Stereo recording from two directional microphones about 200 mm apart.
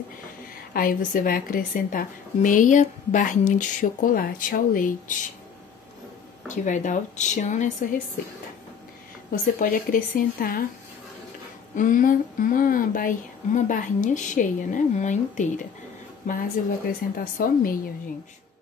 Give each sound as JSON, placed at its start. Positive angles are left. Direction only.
{"t": 0.7, "sound": "a woman's voice", "side_deg": 45}
{"t": 6.5, "sound": "speech", "side_deg": 40}
{"t": 9.3, "sound": "a woman's voice", "side_deg": 45}
{"t": 11.7, "sound": "a woman's voice", "side_deg": 40}